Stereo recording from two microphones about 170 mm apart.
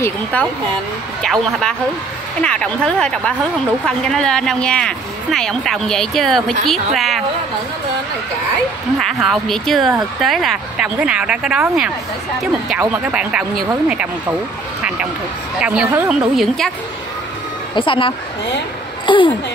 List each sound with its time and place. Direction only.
0.0 s speech: 10° left (ahead or behind)
9.2 s speech: centre (ahead or behind)
15.6 s speech: 5° right (ahead or behind)
17.7 s speech: 30° left (ahead or behind)